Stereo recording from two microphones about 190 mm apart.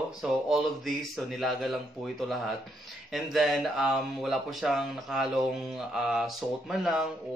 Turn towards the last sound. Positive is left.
turn(degrees=0)  # may be behind; listen again after turning